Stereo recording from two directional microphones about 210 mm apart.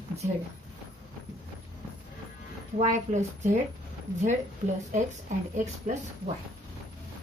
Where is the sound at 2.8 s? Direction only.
35° right (ahead or behind).